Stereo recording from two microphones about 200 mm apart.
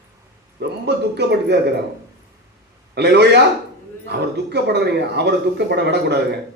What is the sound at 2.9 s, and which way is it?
Speech, 55° right (ahead or behind).